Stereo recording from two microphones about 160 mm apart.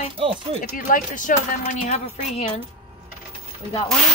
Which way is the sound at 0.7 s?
65° left (ahead or behind).